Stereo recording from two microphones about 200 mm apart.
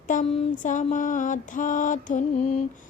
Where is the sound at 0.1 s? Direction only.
40° left (ahead or behind).